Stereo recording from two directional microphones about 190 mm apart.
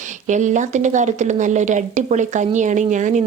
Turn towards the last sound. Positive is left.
turn(degrees=-40)  # may be behind; listen again after turning